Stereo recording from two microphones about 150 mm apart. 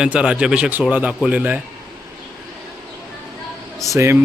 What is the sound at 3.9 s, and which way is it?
Speech, 20° right (ahead or behind).